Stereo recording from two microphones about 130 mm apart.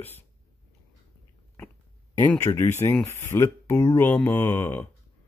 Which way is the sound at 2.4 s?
20° left (ahead or behind).